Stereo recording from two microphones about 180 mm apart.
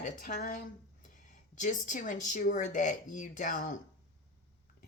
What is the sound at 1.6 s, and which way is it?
A woman's voice, 45° left (ahead or behind).